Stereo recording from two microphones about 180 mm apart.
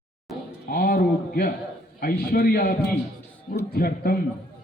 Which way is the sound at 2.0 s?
55° left (ahead or behind).